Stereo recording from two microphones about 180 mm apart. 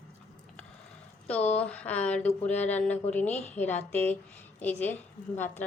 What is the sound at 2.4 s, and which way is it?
Speech, 40° left (ahead or behind).